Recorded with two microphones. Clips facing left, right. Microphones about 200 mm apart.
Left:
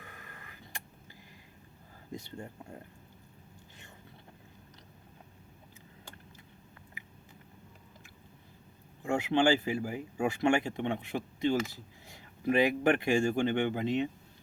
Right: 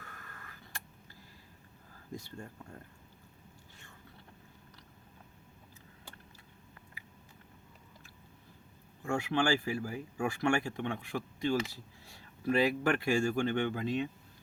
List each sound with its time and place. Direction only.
0.0 s a sound: 15° left (ahead or behind)
2.1 s speech: 20° left (ahead or behind)
9.0 s speech: 20° left (ahead or behind)